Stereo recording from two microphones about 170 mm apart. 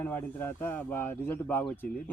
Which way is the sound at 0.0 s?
15° left (ahead or behind).